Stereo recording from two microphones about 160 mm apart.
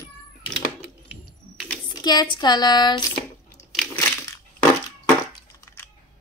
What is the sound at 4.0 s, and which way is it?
Crushing, 15° left (ahead or behind).